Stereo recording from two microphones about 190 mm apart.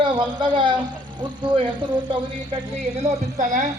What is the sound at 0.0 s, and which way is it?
A man's voice, 25° right (ahead or behind).